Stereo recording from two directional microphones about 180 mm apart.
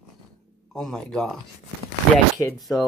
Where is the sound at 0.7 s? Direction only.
5° left (ahead or behind).